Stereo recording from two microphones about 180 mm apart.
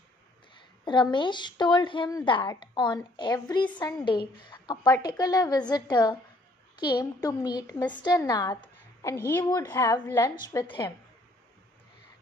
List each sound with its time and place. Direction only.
0.8 s speech: 25° left (ahead or behind)